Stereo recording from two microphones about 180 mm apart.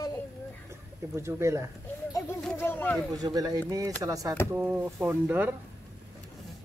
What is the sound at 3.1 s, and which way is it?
Speech, 20° right (ahead or behind).